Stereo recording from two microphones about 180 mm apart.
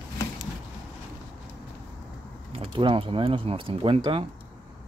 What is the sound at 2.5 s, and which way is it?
Speech, 30° right (ahead or behind).